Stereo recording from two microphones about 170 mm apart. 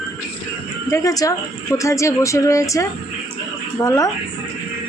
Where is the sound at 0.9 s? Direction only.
20° left (ahead or behind).